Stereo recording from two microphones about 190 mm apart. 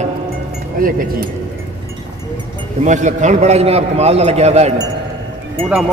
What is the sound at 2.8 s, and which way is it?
A man's voice, 40° right (ahead or behind).